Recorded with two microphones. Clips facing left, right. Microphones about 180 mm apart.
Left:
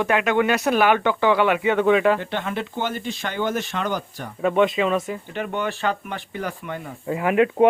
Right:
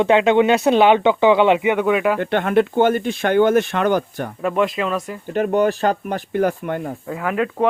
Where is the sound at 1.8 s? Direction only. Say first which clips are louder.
Even; 5° right (ahead or behind).